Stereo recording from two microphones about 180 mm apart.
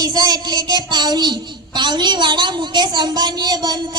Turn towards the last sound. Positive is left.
turn(degrees=-25)  # may be behind; listen again after turning